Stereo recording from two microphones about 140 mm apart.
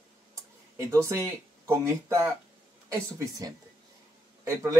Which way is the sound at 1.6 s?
20° right (ahead or behind).